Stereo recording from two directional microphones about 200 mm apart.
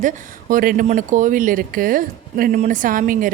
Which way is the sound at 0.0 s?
40° right (ahead or behind).